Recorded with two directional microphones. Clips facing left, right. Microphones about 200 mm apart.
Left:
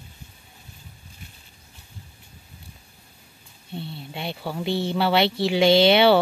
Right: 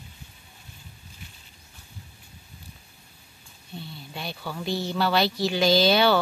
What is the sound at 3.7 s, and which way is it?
Speech, 30° left (ahead or behind).